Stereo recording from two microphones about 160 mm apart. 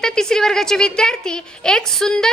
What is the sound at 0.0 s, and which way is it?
A woman's voice, 5° left (ahead or behind).